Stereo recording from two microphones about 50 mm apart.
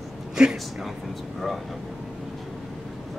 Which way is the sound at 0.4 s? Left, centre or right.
Centre.